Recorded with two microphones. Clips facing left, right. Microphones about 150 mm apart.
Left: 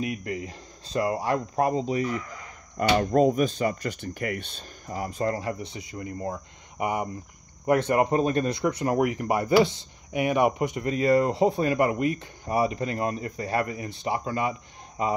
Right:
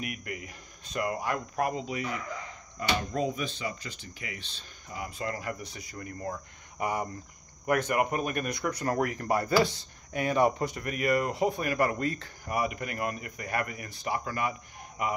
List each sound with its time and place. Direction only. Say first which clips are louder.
0.0 s speech: left 7 dB; 25° left (ahead or behind)
2.8 s speech: left 9 dB; 50° left (ahead or behind); by 15.1 s 25° left (ahead or behind)